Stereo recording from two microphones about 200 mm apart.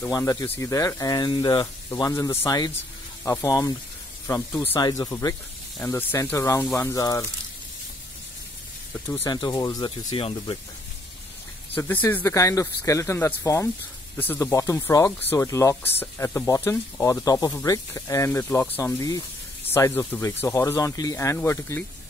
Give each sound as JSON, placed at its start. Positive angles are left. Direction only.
{"t": 0.0, "sound": "speech", "side_deg": 15}
{"t": 4.7, "sound": "speech", "side_deg": 20}
{"t": 6.6, "sound": "speech", "side_deg": 5}
{"t": 6.9, "sound": "speech", "side_deg": 15}
{"t": 8.9, "sound": "speech", "side_deg": 10}
{"t": 11.7, "sound": "speech", "side_deg": 10}